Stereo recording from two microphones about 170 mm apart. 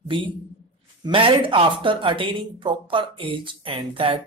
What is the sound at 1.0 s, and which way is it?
Speech, 30° right (ahead or behind).